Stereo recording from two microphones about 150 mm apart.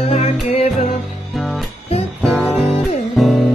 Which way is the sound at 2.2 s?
Centre (ahead or behind).